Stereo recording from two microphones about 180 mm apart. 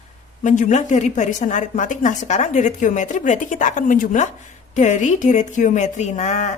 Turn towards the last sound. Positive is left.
turn(degrees=40)  # may be behind; listen again after turning